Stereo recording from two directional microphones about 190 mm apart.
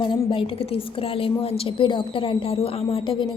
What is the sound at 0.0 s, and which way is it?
A woman's voice, 25° left (ahead or behind).